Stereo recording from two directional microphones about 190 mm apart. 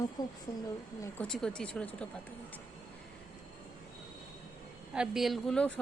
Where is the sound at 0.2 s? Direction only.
20° left (ahead or behind).